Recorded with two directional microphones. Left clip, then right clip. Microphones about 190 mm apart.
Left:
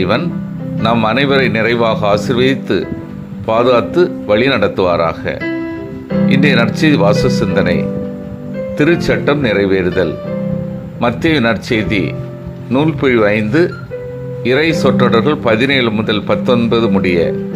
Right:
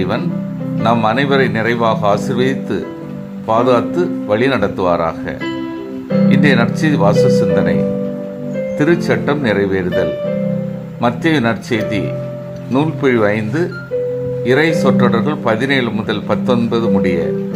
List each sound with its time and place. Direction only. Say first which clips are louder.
1.0 s speech: left 1 dB; 10° left (ahead or behind)
8.8 s speech: left 3 dB; 10° left (ahead or behind)